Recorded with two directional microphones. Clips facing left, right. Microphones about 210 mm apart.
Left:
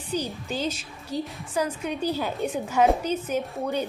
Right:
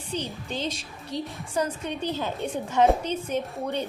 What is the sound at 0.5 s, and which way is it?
A woman's voice, 5° left (ahead or behind).